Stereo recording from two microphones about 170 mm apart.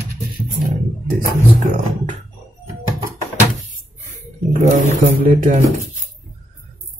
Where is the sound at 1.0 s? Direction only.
50° right (ahead or behind).